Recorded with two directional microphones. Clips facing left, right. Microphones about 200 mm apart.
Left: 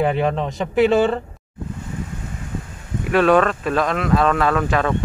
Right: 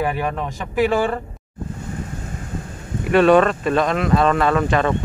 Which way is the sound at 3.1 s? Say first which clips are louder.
Right 2 dB; centre (ahead or behind).